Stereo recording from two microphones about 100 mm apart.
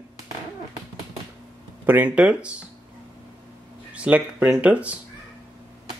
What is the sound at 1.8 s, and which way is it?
Speech, 15° right (ahead or behind).